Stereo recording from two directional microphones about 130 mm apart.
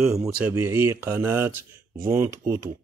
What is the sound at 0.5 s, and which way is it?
Speech, 20° right (ahead or behind).